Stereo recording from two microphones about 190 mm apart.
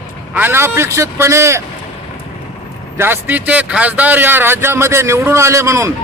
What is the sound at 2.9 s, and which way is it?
Speech, 10° right (ahead or behind).